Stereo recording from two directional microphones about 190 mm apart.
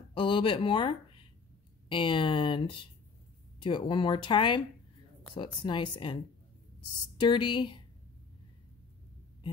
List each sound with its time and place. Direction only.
0.1 s speech: 25° left (ahead or behind)
7.2 s speech: 25° left (ahead or behind)